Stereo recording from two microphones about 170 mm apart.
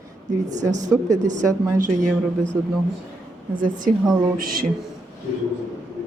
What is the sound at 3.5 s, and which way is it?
Speech, 55° right (ahead or behind).